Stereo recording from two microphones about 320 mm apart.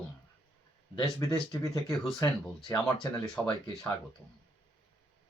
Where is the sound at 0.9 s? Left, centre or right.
Centre.